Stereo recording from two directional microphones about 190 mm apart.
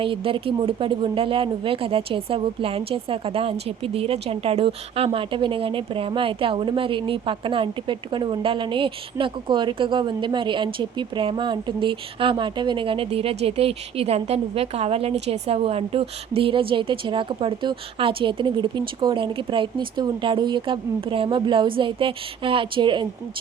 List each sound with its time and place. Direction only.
0.0 s speech: 30° right (ahead or behind)